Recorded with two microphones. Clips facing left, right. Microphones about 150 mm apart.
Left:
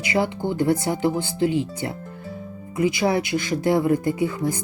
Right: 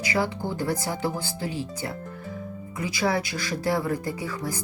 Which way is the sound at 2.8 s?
25° left (ahead or behind).